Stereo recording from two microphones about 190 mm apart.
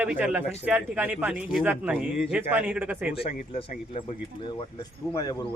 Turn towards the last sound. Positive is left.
turn(degrees=20)  # may be behind; listen again after turning